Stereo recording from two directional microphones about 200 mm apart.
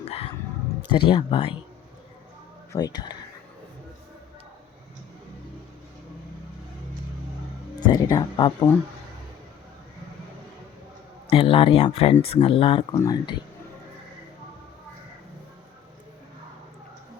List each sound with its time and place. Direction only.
0.0 s a sound: 30° left (ahead or behind)
0.9 s speech: 25° left (ahead or behind)
2.7 s speech: 20° left (ahead or behind)
7.8 s speech: 20° left (ahead or behind)
11.3 s speech: 25° left (ahead or behind)